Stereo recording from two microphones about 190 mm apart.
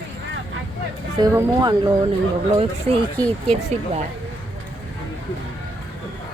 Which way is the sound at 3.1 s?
10° left (ahead or behind).